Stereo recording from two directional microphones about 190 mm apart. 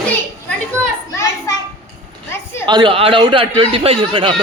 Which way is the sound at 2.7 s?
25° right (ahead or behind).